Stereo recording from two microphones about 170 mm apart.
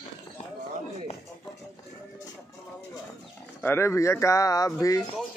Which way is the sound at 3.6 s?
15° left (ahead or behind).